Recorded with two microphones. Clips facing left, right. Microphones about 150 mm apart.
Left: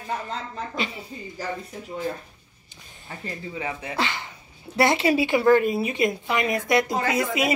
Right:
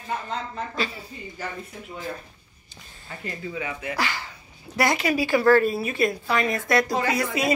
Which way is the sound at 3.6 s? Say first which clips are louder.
Left 1 dB; 30° left (ahead or behind).